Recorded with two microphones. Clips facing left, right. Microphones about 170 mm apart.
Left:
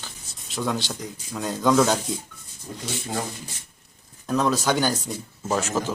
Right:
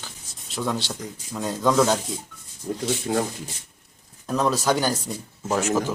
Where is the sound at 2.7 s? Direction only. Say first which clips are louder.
Right 8 dB; 50° right (ahead or behind).